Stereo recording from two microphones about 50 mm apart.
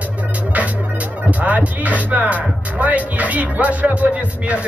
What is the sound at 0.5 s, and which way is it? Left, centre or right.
Music, right.